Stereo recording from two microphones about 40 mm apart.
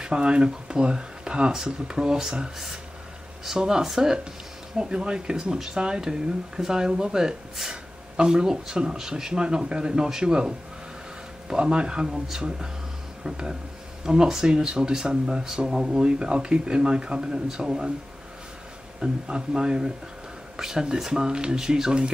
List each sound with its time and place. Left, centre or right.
0.0 s speech: right
18.9 s speech: right